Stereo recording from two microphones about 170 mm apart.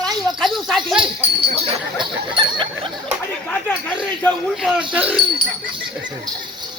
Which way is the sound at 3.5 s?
10° left (ahead or behind).